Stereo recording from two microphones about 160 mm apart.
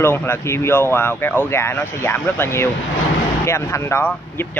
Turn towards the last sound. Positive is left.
turn(degrees=15)  # may be behind; listen again after turning